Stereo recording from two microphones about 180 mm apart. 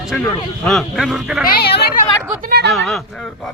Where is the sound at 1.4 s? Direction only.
60° left (ahead or behind).